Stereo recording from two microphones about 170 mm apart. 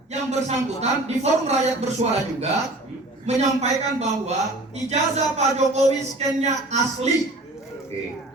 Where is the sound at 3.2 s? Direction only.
40° right (ahead or behind).